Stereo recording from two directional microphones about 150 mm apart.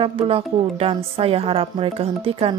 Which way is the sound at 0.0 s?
40° right (ahead or behind).